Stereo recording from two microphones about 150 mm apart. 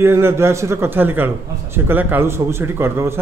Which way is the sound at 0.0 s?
15° right (ahead or behind).